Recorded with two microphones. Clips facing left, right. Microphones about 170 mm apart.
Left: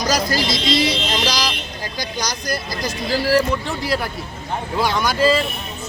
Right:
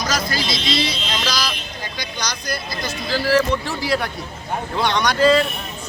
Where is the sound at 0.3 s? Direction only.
40° left (ahead or behind).